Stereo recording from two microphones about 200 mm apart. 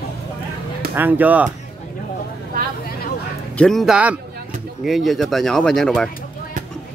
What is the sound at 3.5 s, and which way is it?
Speech, centre (ahead or behind).